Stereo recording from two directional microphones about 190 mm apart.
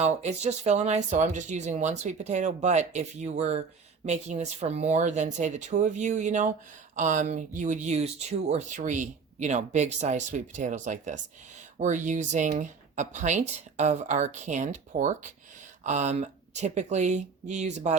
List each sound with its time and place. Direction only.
0.0 s speech: 35° right (ahead or behind)